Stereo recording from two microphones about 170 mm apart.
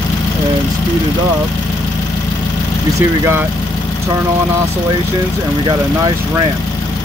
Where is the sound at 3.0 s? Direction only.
15° right (ahead or behind).